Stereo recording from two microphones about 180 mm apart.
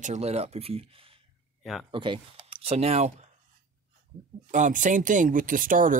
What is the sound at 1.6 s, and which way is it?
Speech, centre (ahead or behind).